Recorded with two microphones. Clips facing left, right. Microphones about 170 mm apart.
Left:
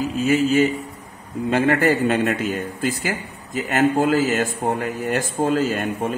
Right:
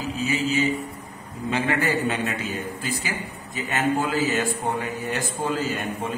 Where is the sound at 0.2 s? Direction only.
55° left (ahead or behind).